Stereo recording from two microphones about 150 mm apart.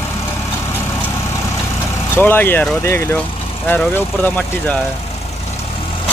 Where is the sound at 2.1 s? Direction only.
15° left (ahead or behind).